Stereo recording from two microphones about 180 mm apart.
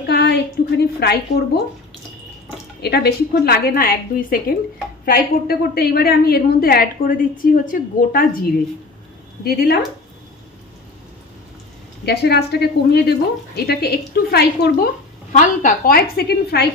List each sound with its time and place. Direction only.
0.0 s a sound: 65° left (ahead or behind)
2.8 s a woman's voice: 60° left (ahead or behind)
9.4 s a woman's voice: 60° left (ahead or behind)
12.0 s a woman's voice: 65° left (ahead or behind)
15.3 s a woman's voice: 50° left (ahead or behind)